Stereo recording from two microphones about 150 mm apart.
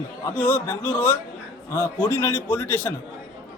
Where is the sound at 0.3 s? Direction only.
10° left (ahead or behind).